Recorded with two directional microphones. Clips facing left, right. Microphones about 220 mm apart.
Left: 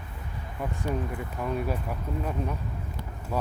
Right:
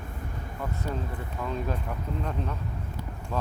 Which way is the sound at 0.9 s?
15° left (ahead or behind).